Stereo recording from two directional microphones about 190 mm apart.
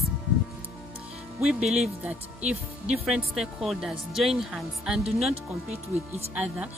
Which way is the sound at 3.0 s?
5° right (ahead or behind).